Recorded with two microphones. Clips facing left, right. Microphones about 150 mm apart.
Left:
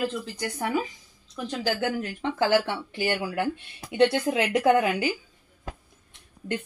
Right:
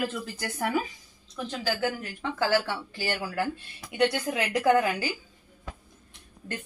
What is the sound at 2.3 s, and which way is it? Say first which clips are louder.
Speech: left 3 dB; 20° left (ahead or behind).